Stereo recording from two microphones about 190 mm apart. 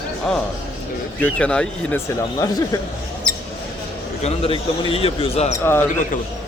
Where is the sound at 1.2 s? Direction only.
5° left (ahead or behind).